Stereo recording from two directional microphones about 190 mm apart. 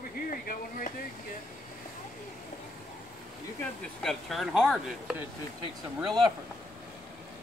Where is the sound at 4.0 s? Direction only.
Centre (ahead or behind).